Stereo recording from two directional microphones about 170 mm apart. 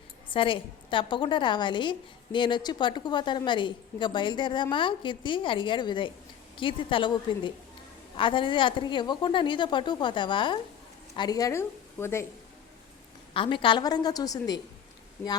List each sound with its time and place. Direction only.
0.3 s a woman's voice: 30° left (ahead or behind); by 12.2 s 15° left (ahead or behind)
13.3 s a woman's voice: 30° left (ahead or behind)